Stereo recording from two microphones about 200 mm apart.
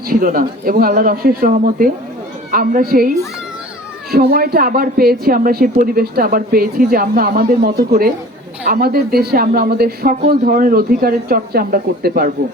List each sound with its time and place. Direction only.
0.1 s speech: 45° right (ahead or behind)
4.1 s speech: 50° right (ahead or behind)